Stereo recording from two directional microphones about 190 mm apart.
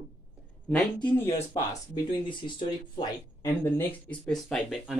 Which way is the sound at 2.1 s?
25° left (ahead or behind).